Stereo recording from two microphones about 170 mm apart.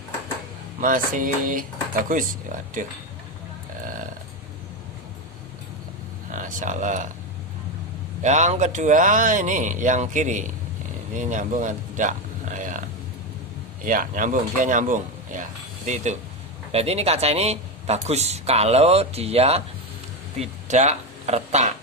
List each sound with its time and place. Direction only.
0.8 s speech: 50° right (ahead or behind)
2.8 s speech: 50° right (ahead or behind)
6.3 s speech: 50° right (ahead or behind)
8.2 s speech: 45° right (ahead or behind)
12.5 s a sound: 50° right (ahead or behind)
13.8 s speech: 55° right (ahead or behind)
16.7 s speech: 35° right (ahead or behind)